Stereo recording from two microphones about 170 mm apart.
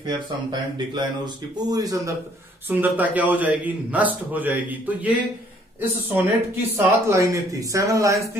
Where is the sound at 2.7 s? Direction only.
10° right (ahead or behind).